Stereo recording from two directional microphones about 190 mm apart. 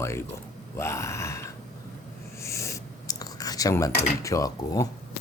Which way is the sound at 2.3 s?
15° left (ahead or behind).